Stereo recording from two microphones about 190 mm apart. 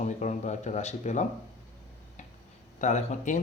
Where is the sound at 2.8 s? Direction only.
40° left (ahead or behind).